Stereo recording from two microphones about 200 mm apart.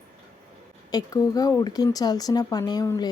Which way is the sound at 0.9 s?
20° left (ahead or behind).